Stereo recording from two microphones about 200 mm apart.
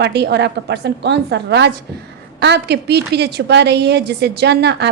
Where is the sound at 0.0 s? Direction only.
55° right (ahead or behind).